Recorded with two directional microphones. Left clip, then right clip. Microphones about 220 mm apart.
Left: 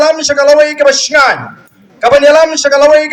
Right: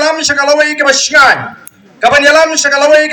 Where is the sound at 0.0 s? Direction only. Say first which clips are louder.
Left 3 dB; 45° left (ahead or behind).